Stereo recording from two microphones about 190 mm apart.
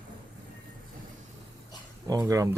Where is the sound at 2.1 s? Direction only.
20° right (ahead or behind).